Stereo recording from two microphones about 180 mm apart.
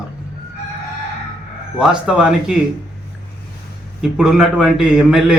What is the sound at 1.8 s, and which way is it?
Speech, 5° right (ahead or behind).